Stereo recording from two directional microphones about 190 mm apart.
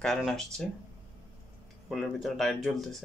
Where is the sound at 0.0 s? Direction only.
Centre (ahead or behind).